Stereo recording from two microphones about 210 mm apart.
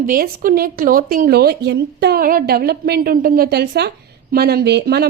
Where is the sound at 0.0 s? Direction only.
40° right (ahead or behind).